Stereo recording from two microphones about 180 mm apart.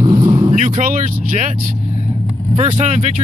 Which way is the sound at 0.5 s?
40° right (ahead or behind).